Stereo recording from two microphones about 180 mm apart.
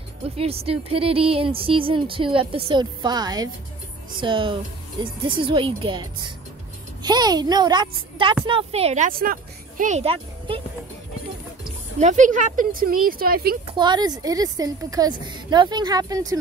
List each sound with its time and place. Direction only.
0.4 s a woman's voice: 35° right (ahead or behind)
12.0 s speech: 40° right (ahead or behind)
13.7 s a woman's voice: 25° right (ahead or behind)